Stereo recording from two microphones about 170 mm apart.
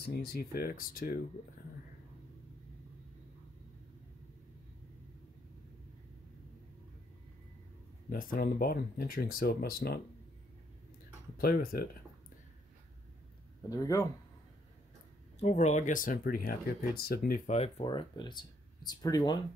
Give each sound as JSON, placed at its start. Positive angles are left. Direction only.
{"t": 0.0, "sound": "speech", "side_deg": 65}
{"t": 8.1, "sound": "speech", "side_deg": 55}
{"t": 11.3, "sound": "speech", "side_deg": 60}
{"t": 13.7, "sound": "speech", "side_deg": 20}
{"t": 15.3, "sound": "speech", "side_deg": 40}
{"t": 17.5, "sound": "speech", "side_deg": 40}
{"t": 17.8, "sound": "speech", "side_deg": 25}